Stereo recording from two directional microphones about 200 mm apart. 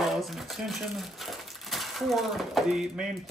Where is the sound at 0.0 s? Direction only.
Centre (ahead or behind).